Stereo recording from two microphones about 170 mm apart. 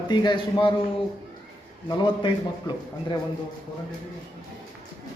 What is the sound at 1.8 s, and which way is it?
Speech, 25° left (ahead or behind).